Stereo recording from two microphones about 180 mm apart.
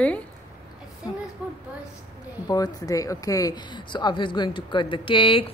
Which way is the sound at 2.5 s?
20° left (ahead or behind).